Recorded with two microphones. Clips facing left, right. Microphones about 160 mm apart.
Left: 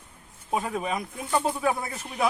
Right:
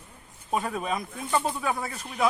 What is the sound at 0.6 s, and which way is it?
Speech, 15° left (ahead or behind).